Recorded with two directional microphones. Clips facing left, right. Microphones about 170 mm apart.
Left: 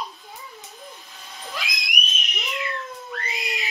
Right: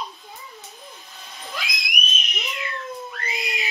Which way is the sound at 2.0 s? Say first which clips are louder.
Even; centre (ahead or behind).